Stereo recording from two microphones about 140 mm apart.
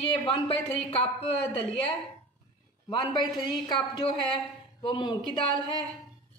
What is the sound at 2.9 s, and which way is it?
A woman's voice, 30° left (ahead or behind).